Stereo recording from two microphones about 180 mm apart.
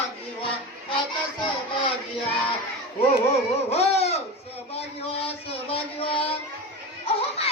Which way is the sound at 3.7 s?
35° left (ahead or behind).